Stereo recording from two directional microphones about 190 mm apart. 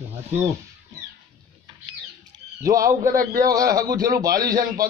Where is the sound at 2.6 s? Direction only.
15° right (ahead or behind).